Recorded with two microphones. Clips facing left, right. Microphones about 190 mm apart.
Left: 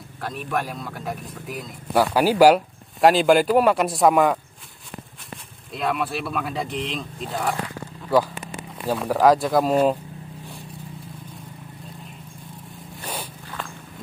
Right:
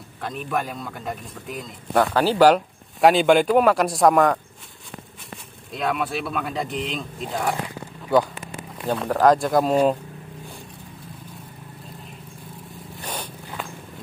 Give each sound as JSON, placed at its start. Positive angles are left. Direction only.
{"t": 0.2, "sound": "speech", "side_deg": 0}
{"t": 5.7, "sound": "speech", "side_deg": 0}
{"t": 13.0, "sound": "zipper", "side_deg": 5}